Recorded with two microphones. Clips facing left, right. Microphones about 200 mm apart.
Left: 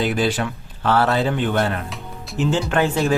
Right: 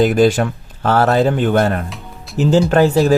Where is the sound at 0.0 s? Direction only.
45° right (ahead or behind).